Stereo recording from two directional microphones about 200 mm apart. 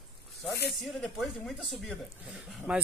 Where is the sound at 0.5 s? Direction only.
55° left (ahead or behind).